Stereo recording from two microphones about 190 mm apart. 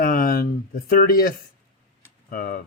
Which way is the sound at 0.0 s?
50° left (ahead or behind).